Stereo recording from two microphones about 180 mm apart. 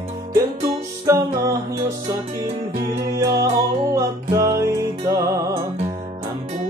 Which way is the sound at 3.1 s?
15° right (ahead or behind).